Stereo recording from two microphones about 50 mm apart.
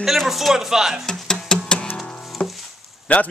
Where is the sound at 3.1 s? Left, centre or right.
Left.